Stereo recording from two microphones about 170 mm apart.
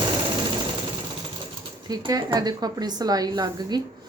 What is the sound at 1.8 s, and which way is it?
A woman's voice, 25° right (ahead or behind).